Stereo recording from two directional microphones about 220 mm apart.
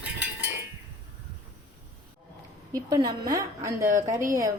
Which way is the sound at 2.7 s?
20° right (ahead or behind).